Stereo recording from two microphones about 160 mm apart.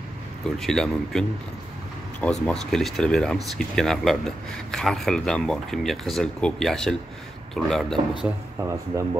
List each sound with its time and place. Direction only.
0.6 s speech: centre (ahead or behind)
8.5 s speech: 20° right (ahead or behind)